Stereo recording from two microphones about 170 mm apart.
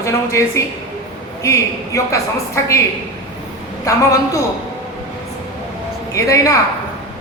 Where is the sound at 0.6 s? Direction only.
20° left (ahead or behind).